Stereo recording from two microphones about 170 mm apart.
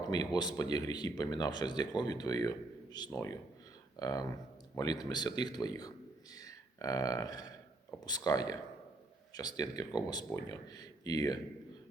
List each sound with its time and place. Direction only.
0.0 s speech: 25° left (ahead or behind)
6.3 s a sound: 20° left (ahead or behind)
8.0 s speech: 25° left (ahead or behind)